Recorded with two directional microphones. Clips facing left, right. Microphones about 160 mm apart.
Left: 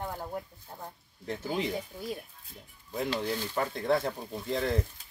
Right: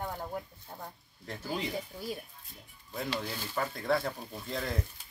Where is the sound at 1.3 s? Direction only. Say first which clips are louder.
Left 4 dB; 20° left (ahead or behind).